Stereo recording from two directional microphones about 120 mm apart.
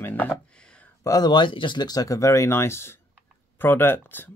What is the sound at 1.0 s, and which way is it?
Speech, 30° left (ahead or behind).